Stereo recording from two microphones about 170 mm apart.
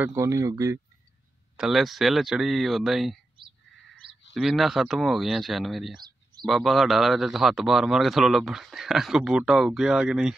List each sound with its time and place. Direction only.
0.0 s speech: 15° right (ahead or behind)
1.6 s a man's voice: centre (ahead or behind)
4.3 s a man's voice: centre (ahead or behind)